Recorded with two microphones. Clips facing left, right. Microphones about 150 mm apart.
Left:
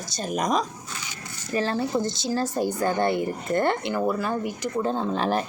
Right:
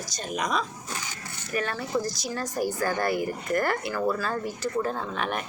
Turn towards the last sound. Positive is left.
turn(degrees=30)  # may be behind; listen again after turning